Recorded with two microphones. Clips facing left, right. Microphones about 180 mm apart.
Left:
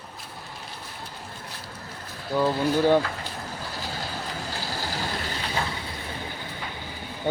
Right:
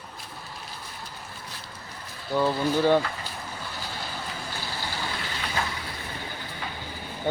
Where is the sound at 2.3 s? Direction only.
10° left (ahead or behind).